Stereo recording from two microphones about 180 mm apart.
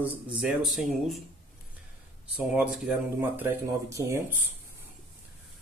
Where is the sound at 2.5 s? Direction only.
5° right (ahead or behind).